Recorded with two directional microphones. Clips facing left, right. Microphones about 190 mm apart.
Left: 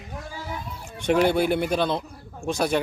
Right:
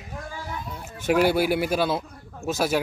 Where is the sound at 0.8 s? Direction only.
5° right (ahead or behind).